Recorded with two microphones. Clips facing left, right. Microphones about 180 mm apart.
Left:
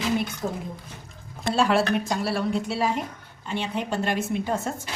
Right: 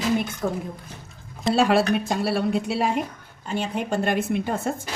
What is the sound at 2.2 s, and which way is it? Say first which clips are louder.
Speech: right 3 dB; 60° right (ahead or behind).